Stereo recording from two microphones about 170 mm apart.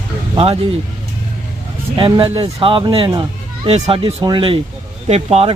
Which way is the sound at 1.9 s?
30° right (ahead or behind).